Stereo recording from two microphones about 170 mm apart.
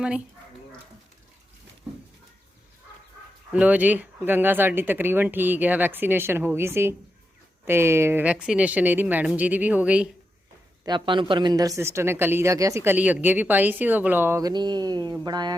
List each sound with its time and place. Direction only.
3.5 s speech: 10° right (ahead or behind)
10.8 s speech: 25° right (ahead or behind)